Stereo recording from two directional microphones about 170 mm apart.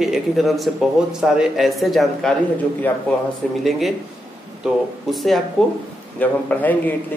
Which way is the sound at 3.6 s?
Centre (ahead or behind).